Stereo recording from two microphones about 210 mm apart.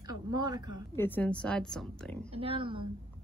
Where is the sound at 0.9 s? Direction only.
10° left (ahead or behind).